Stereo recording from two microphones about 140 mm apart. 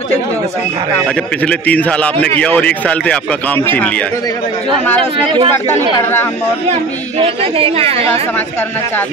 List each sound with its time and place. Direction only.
1.0 s speech: 10° left (ahead or behind)
5.1 s speech: 40° right (ahead or behind)
6.7 s speech: 45° right (ahead or behind)